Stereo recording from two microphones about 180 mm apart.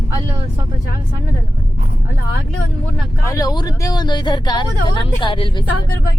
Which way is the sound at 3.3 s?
20° left (ahead or behind).